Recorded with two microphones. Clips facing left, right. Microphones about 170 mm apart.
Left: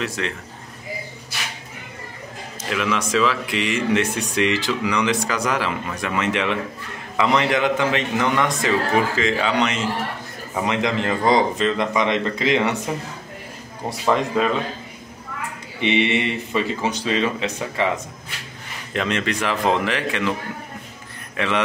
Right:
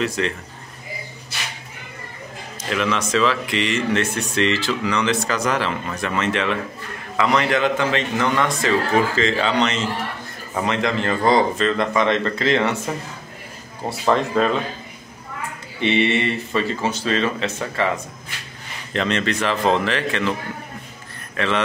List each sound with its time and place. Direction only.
0.0 s a man's voice: centre (ahead or behind)
2.7 s speech: 5° left (ahead or behind)
14.1 s speech: 10° left (ahead or behind)
15.8 s speech: 15° left (ahead or behind)
21.4 s speech: 15° left (ahead or behind)